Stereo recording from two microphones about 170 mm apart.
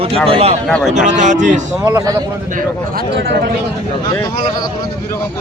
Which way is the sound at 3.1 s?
80° right.